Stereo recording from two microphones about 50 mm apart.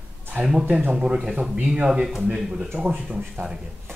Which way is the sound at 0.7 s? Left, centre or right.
Right.